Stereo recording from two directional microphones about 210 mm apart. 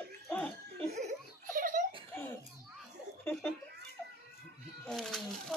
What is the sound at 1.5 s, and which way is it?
Giggle, 40° right (ahead or behind).